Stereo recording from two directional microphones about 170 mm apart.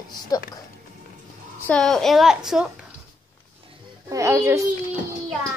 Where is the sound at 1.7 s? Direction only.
5° left (ahead or behind).